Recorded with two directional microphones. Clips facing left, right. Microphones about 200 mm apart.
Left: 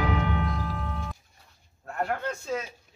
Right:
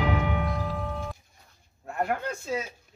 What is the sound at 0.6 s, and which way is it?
Music, centre (ahead or behind).